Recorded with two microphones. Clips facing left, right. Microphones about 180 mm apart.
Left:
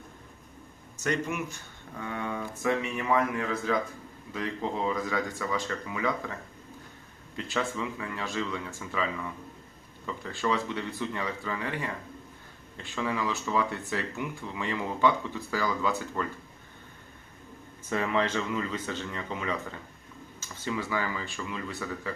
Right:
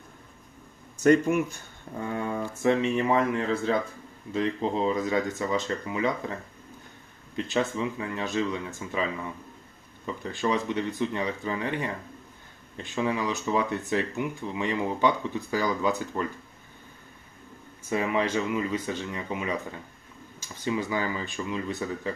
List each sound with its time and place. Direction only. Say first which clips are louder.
0.9 s speech: right 10 dB; 55° right (ahead or behind)
2.0 s speech: right 4 dB; 35° right (ahead or behind)
2.6 s speech: right 6 dB; 25° right (ahead or behind)
7.3 s speech: right 4 dB; 20° right (ahead or behind)
10.1 s speech: right 2 dB; 20° right (ahead or behind)
17.8 s speech: right 2 dB; 15° right (ahead or behind)